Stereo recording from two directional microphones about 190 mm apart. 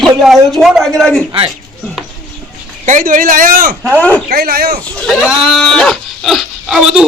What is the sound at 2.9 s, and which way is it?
Speech, 40° right (ahead or behind).